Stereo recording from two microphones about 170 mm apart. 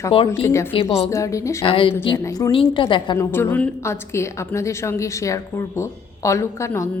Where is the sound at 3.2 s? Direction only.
15° left (ahead or behind).